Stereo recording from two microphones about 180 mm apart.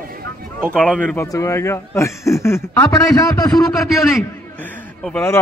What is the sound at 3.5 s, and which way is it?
A man's voice, centre (ahead or behind).